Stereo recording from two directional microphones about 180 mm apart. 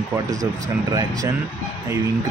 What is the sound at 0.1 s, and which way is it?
Speech, 20° right (ahead or behind).